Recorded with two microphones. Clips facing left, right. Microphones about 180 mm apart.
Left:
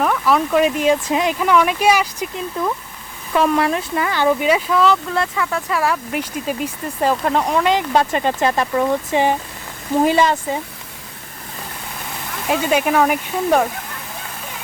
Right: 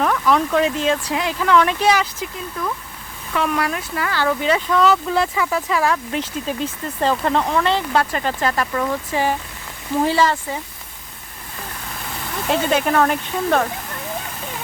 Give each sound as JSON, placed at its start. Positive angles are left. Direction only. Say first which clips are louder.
{"t": 0.0, "sound": "speech", "louder": "left 1 dB", "side_deg": 5}
{"t": 2.6, "sound": "speech", "louder": "left 3 dB", "side_deg": 25}
{"t": 12.5, "sound": "speech", "louder": "left 1 dB", "side_deg": 10}